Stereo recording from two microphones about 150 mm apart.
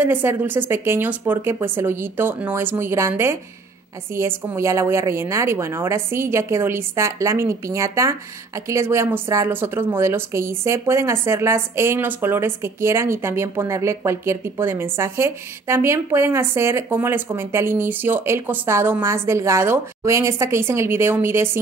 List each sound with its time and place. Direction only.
0.0 s a woman's voice: 15° right (ahead or behind)